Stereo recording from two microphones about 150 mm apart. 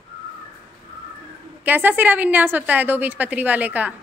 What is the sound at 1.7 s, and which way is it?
A woman's voice, 10° right (ahead or behind).